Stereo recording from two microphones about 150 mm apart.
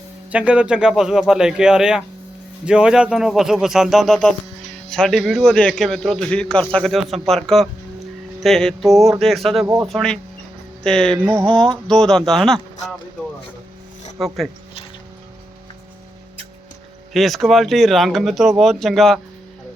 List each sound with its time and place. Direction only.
0.3 s speech: 10° right (ahead or behind)
9.6 s speech: 20° right (ahead or behind)
9.9 s speech: 5° left (ahead or behind)
14.2 s speech: centre (ahead or behind)
17.2 s speech: centre (ahead or behind)